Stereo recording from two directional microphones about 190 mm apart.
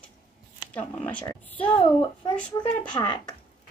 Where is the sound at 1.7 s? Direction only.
25° left (ahead or behind).